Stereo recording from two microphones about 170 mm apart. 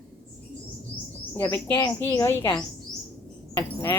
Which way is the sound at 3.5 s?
20° left (ahead or behind).